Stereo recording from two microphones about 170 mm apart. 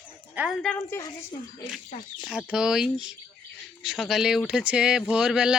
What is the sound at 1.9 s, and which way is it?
Speech, 30° left (ahead or behind).